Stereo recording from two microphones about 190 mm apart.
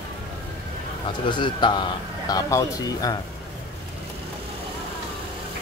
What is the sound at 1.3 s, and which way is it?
Speech, 25° left (ahead or behind).